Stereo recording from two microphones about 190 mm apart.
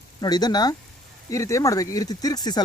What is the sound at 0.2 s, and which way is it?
Speech, 20° left (ahead or behind).